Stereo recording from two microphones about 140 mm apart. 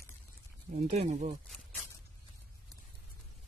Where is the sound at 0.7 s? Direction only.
55° right (ahead or behind).